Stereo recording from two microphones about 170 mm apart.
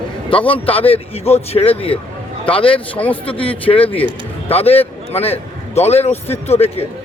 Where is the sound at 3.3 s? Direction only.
30° left (ahead or behind).